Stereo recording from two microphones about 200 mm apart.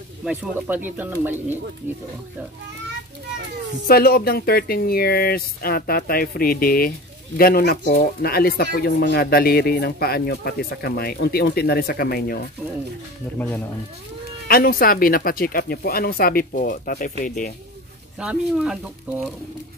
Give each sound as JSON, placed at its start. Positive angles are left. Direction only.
{"t": 0.2, "sound": "speech", "side_deg": -5}
{"t": 3.8, "sound": "speech", "side_deg": 50}
{"t": 14.5, "sound": "speech", "side_deg": 45}
{"t": 18.2, "sound": "speech", "side_deg": -5}